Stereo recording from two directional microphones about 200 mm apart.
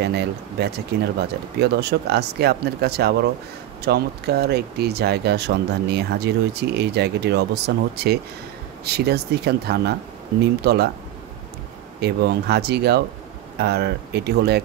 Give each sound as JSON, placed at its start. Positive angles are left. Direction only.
{"t": 0.0, "sound": "speech", "side_deg": -55}
{"t": 12.0, "sound": "speech", "side_deg": -55}